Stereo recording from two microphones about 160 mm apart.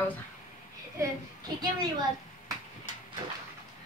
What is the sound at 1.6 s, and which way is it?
Speech, 25° right (ahead or behind).